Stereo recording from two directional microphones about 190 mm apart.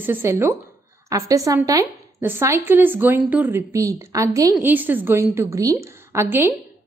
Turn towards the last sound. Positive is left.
turn(degrees=-10)  # may be behind; listen again after turning